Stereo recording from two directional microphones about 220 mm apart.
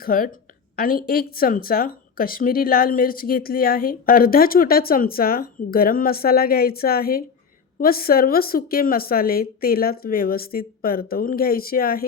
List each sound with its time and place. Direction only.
0.0 s speech: 40° left (ahead or behind)